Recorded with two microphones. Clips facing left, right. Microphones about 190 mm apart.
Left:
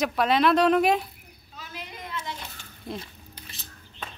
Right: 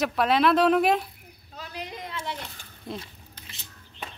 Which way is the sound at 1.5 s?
35° right (ahead or behind).